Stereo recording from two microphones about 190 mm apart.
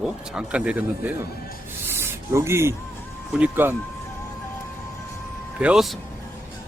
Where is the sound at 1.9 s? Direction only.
15° right (ahead or behind).